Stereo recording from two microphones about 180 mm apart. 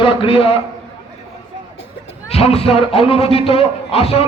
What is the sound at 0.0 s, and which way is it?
Speech, 30° left (ahead or behind).